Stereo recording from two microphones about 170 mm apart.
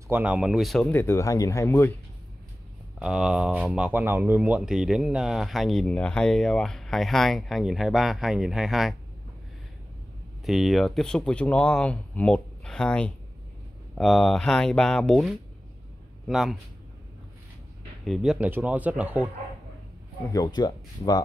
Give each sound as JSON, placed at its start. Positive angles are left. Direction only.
{"t": 0.1, "sound": "speech", "side_deg": -10}
{"t": 3.0, "sound": "speech", "side_deg": -5}
{"t": 10.4, "sound": "a man's voice", "side_deg": 0}
{"t": 18.0, "sound": "speech", "side_deg": 0}
{"t": 20.3, "sound": "speech", "side_deg": 25}